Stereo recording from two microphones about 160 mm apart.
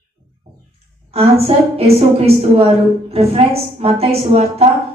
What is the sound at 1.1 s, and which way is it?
A woman's voice, 40° right (ahead or behind).